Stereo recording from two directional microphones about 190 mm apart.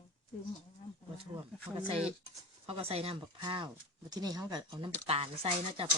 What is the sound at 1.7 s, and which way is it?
Speech, 20° right (ahead or behind).